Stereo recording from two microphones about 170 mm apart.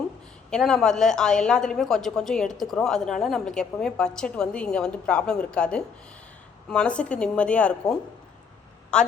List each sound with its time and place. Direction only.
0.5 s a woman's voice: 5° left (ahead or behind)